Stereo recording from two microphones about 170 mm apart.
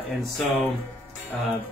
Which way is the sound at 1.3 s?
5° left (ahead or behind).